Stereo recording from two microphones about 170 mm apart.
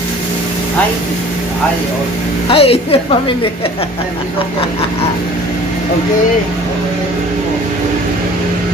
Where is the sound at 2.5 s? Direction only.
35° left (ahead or behind).